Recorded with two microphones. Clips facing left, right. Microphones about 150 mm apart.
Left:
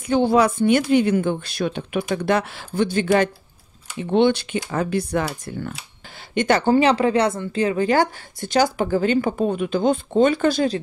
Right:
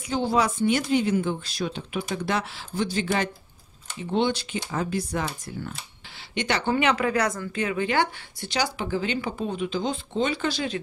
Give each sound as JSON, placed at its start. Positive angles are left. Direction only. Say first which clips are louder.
{"t": 0.1, "sound": "speech", "louder": "left 7 dB", "side_deg": 60}
{"t": 6.3, "sound": "speech", "louder": "left 8 dB", "side_deg": 50}